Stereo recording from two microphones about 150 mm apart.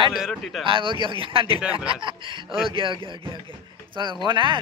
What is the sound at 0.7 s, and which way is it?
Speech, 35° right (ahead or behind).